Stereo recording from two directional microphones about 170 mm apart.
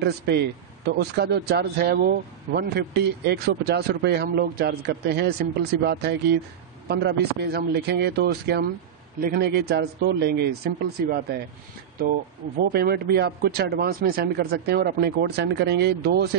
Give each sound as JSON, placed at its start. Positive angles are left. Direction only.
{"t": 0.0, "sound": "a man's voice", "side_deg": -80}
{"t": 12.7, "sound": "a man's voice", "side_deg": -65}